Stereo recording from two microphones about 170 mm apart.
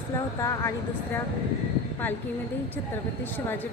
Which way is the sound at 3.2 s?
10° left (ahead or behind).